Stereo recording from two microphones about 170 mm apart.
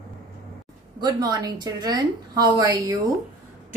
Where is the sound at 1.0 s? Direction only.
20° right (ahead or behind).